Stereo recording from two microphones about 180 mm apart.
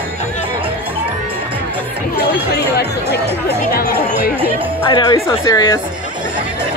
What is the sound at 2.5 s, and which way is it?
Speech, 65° left (ahead or behind).